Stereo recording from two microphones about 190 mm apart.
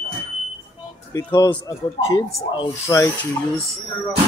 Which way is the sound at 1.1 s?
20° left (ahead or behind).